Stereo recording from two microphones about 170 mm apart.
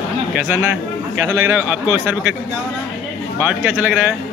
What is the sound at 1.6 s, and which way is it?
Speech, 15° right (ahead or behind).